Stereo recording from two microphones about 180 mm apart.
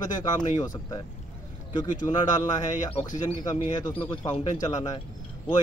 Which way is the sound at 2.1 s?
20° left (ahead or behind).